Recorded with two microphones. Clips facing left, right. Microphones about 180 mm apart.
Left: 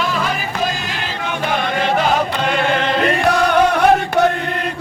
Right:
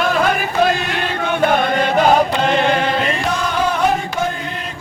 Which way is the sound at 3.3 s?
65° left (ahead or behind).